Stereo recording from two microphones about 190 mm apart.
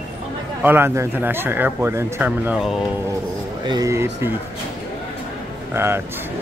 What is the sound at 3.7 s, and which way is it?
Speech, 15° right (ahead or behind).